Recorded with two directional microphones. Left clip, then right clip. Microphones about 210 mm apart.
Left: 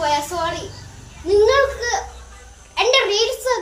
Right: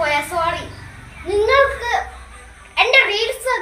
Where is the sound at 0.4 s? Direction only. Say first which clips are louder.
Right 3 dB; 20° left (ahead or behind).